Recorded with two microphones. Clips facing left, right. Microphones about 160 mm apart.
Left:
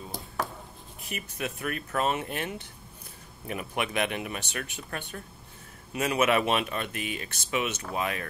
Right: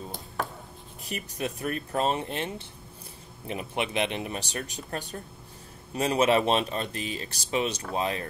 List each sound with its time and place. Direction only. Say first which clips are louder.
1.0 s speech: right 2 dB; 35° right (ahead or behind)